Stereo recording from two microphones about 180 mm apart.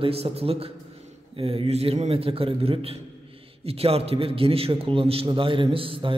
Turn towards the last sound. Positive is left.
turn(degrees=-30)  # may be behind; listen again after turning